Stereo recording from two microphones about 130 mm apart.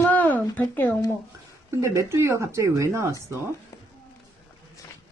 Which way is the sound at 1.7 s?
20° right (ahead or behind).